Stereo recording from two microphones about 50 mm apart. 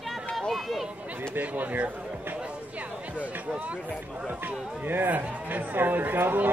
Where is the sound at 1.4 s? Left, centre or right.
Right.